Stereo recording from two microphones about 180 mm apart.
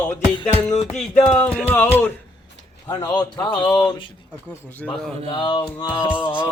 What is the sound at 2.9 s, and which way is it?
Music, 20° left (ahead or behind).